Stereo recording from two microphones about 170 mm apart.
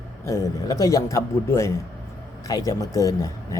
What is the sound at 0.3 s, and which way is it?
Speech, 20° left (ahead or behind).